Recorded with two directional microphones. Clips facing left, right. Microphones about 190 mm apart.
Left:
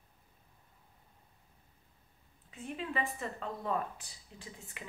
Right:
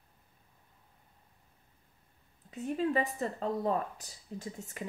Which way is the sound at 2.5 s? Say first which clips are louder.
Right 8 dB; 40° right (ahead or behind).